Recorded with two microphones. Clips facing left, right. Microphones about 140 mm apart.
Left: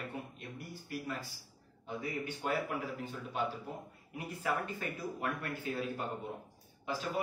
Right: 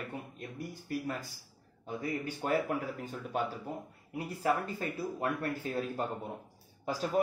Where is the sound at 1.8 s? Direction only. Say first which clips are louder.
Right 3 dB; 40° right (ahead or behind).